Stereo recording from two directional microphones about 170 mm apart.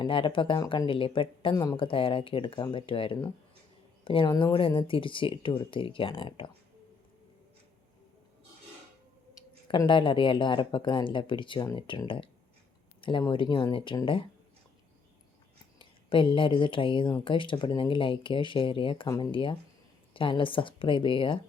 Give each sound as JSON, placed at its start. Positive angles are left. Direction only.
{"t": 0.0, "sound": "speech", "side_deg": 30}
{"t": 9.6, "sound": "speech", "side_deg": 30}
{"t": 15.8, "sound": "speech", "side_deg": 30}